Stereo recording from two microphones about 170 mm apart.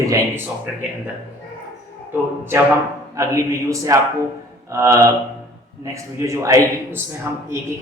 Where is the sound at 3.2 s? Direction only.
20° right (ahead or behind).